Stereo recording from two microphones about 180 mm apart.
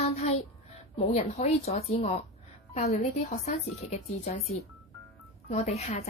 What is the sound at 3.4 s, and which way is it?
Speech, 35° left (ahead or behind).